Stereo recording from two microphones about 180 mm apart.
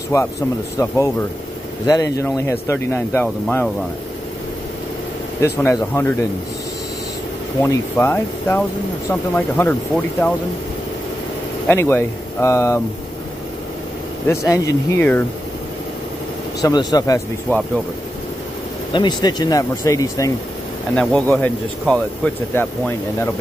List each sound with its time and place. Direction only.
0.1 s speech: 15° left (ahead or behind)
3.4 s speech: 5° left (ahead or behind)
5.4 s speech: 15° left (ahead or behind)
7.6 s speech: 15° left (ahead or behind)
11.6 s speech: 10° left (ahead or behind)
14.5 s speech: 15° left (ahead or behind)
16.6 s speech: 20° left (ahead or behind)
18.9 s speech: 25° left (ahead or behind)
20.9 s speech: 5° left (ahead or behind)